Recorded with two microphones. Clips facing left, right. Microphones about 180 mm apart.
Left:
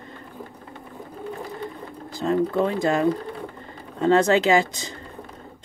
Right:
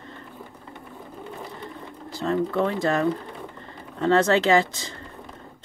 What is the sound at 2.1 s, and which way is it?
A woman's voice, 15° left (ahead or behind).